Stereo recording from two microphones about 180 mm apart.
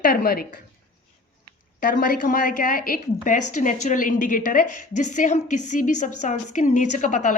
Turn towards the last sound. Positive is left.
turn(degrees=45)  # may be behind; listen again after turning